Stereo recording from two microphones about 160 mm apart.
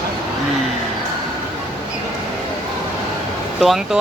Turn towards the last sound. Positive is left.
turn(degrees=0)  # may be behind; listen again after turning